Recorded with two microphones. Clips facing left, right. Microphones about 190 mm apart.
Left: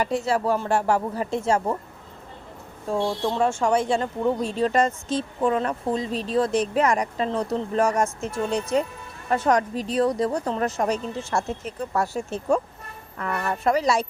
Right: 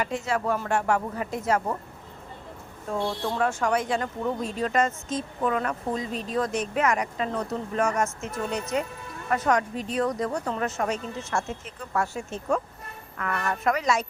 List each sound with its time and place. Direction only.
0.0 s speech: 35° left (ahead or behind)
2.9 s speech: 30° left (ahead or behind)